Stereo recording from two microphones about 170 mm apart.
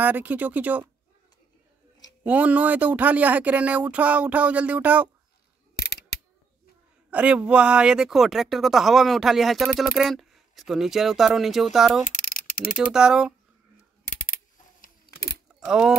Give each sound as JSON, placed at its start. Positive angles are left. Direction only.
{"t": 0.0, "sound": "speech", "side_deg": -10}
{"t": 2.2, "sound": "speech", "side_deg": -10}
{"t": 5.8, "sound": "scissors", "side_deg": 70}
{"t": 7.1, "sound": "speech", "side_deg": -5}
{"t": 12.1, "sound": "mechanisms", "side_deg": 50}
{"t": 12.7, "sound": "speech", "side_deg": -5}
{"t": 14.0, "sound": "a sound", "side_deg": 50}
{"t": 14.8, "sound": "a sound", "side_deg": 65}
{"t": 15.6, "sound": "speech", "side_deg": -5}